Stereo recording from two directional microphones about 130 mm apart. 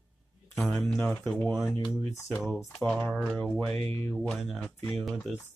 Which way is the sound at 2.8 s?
Centre (ahead or behind).